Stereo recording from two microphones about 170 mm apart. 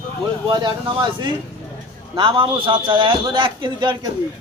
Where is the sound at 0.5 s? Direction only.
25° right (ahead or behind).